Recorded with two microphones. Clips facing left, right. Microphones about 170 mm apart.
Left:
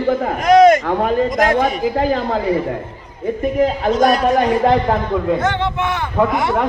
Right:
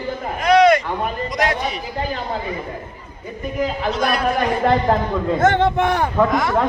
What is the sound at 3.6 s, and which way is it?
Speech, 45° left (ahead or behind).